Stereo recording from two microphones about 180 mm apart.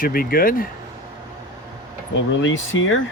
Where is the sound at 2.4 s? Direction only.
90° left.